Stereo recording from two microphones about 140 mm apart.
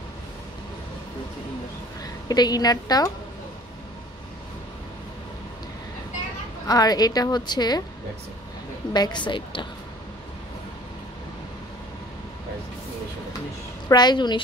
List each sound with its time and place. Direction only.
2.2 s a woman's voice: 30° left (ahead or behind)
6.7 s a woman's voice: 30° left (ahead or behind)
8.9 s a woman's voice: 30° left (ahead or behind)
13.8 s a woman's voice: 30° left (ahead or behind)